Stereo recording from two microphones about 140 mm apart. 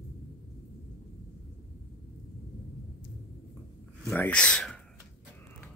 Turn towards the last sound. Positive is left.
turn(degrees=10)  # may be behind; listen again after turning